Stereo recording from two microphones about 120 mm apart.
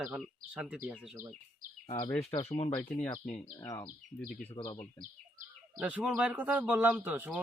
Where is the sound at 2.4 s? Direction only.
55° left (ahead or behind).